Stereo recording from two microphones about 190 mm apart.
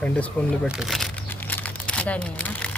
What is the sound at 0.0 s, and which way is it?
Speech, 5° left (ahead or behind).